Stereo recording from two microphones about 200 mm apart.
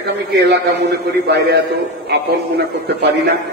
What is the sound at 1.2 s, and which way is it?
A man's voice, 55° right (ahead or behind).